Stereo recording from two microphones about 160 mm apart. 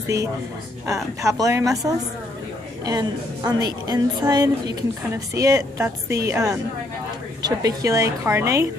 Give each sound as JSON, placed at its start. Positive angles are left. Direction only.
{"t": 1.2, "sound": "a woman's voice", "side_deg": -20}